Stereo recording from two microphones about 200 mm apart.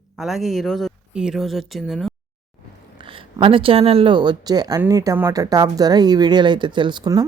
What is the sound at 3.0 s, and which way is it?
Speech, 25° right (ahead or behind).